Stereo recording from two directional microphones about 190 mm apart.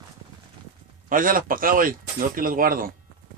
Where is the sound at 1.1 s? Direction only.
45° right (ahead or behind).